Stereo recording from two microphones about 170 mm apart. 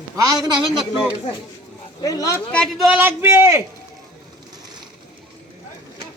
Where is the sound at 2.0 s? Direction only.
20° left (ahead or behind).